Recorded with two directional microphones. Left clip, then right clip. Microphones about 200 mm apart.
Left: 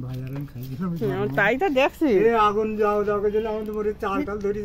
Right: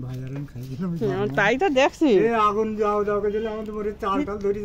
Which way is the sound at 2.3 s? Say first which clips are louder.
Left 1 dB; 30° right (ahead or behind).